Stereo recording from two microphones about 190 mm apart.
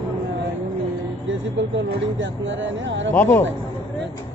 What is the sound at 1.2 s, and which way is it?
Speech, 80° right.